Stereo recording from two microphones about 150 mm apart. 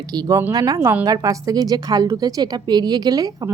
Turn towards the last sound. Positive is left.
turn(degrees=-25)  # may be behind; listen again after turning